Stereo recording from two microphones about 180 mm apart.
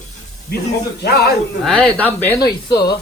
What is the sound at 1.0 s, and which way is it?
Speech, 65° left (ahead or behind).